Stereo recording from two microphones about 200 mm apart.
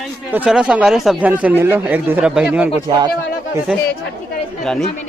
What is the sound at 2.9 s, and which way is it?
Speech, 20° right (ahead or behind).